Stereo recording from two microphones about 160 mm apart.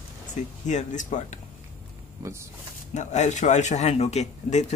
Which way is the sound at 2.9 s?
45° left (ahead or behind).